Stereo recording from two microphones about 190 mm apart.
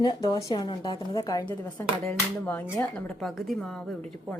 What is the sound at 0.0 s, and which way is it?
A woman's voice, 20° left (ahead or behind).